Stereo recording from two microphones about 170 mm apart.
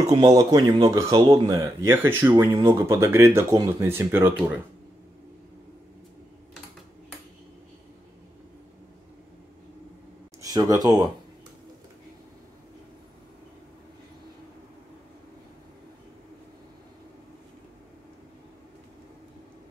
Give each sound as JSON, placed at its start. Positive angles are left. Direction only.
{"t": 0.1, "sound": "speech", "side_deg": -25}
{"t": 10.4, "sound": "speech", "side_deg": -25}